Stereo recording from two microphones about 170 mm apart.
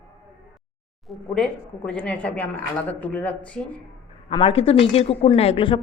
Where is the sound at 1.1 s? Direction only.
5° left (ahead or behind).